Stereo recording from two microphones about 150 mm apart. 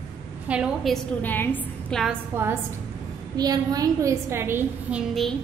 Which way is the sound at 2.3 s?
15° right (ahead or behind).